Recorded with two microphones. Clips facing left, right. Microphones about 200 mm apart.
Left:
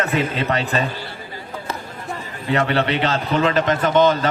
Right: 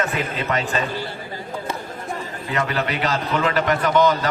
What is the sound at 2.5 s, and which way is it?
A man's voice, 30° left (ahead or behind).